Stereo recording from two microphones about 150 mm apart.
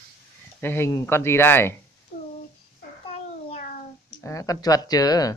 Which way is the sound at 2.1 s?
40° left (ahead or behind).